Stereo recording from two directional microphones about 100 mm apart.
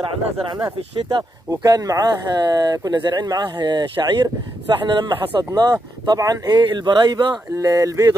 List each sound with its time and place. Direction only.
0.0 s speech: 55° right (ahead or behind)
1.5 s speech: 35° right (ahead or behind); by 5.4 s 55° right (ahead or behind)
5.4 s speech: 40° right (ahead or behind)
7.5 s speech: 35° right (ahead or behind)